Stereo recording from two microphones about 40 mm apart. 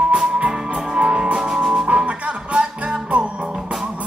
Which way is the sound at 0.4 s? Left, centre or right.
Right.